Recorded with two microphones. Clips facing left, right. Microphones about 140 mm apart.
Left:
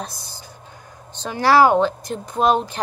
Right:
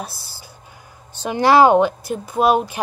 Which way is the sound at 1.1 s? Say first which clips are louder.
Right 2 dB; 15° right (ahead or behind).